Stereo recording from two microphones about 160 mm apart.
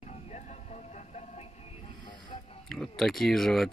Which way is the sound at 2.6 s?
Centre (ahead or behind).